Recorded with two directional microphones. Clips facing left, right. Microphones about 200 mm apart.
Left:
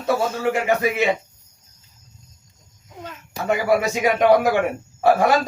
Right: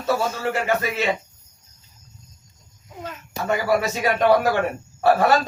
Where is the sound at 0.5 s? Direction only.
15° left (ahead or behind).